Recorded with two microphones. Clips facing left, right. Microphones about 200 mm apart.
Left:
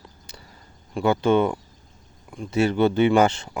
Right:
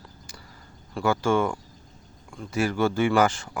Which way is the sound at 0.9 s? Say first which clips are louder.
Left 4 dB; 20° left (ahead or behind).